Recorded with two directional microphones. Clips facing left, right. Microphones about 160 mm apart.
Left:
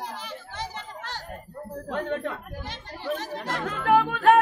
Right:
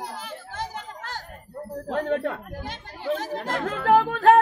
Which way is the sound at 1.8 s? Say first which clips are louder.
Right 4 dB; 40° right (ahead or behind).